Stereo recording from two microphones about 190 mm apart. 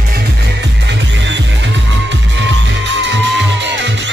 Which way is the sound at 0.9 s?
70° right (ahead or behind).